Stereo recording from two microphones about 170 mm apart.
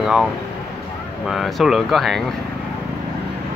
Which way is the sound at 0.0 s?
5° right (ahead or behind).